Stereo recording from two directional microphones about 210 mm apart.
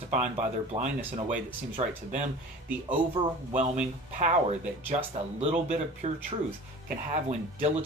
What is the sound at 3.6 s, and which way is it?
Speech, 35° right (ahead or behind).